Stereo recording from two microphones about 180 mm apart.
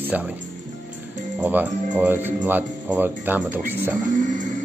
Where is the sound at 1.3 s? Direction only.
10° right (ahead or behind).